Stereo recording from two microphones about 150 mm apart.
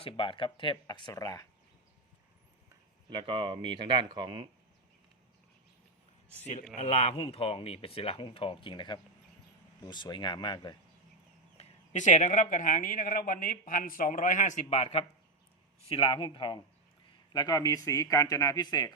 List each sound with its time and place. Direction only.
0.0 s speech: 35° left (ahead or behind)
3.1 s speech: 35° right (ahead or behind)
6.7 s speech: 45° left (ahead or behind); by 10.8 s 30° left (ahead or behind)
11.5 s speech: 55° left (ahead or behind)
15.9 s speech: 35° left (ahead or behind)